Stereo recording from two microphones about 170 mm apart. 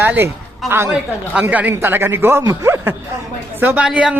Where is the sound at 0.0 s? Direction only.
10° right (ahead or behind).